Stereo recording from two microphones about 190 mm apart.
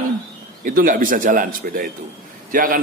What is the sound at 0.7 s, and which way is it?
A man's voice, 45° right (ahead or behind).